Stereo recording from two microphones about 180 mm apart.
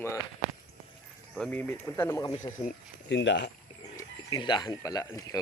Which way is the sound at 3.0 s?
85° left.